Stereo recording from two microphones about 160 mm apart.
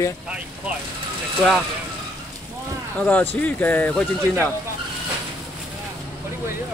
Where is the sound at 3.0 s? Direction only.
10° left (ahead or behind).